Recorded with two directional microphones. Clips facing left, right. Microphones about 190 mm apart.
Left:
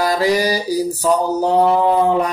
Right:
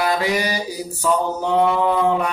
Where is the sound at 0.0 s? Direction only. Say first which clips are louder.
Left 4 dB; 35° left (ahead or behind).